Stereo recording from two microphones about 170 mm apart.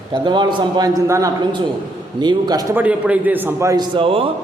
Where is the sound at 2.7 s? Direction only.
10° right (ahead or behind); by 4.3 s 30° right (ahead or behind).